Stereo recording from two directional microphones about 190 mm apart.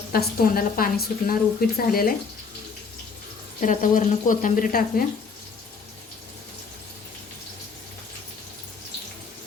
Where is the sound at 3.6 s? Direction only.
45° left (ahead or behind).